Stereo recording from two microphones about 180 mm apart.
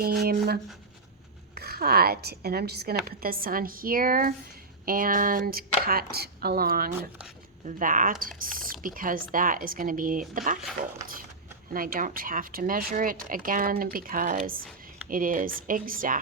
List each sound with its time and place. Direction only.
0.0 s a woman's voice: 60° right (ahead or behind)
1.5 s a woman's voice: 60° right (ahead or behind)